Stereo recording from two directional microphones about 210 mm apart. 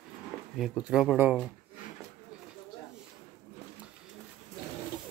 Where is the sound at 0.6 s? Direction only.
5° right (ahead or behind).